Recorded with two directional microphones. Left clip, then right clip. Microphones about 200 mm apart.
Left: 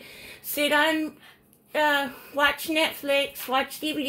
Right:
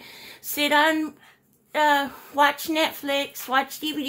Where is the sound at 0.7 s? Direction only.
20° right (ahead or behind).